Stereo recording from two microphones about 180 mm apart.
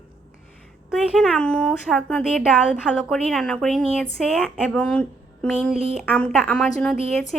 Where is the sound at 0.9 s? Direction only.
Centre (ahead or behind).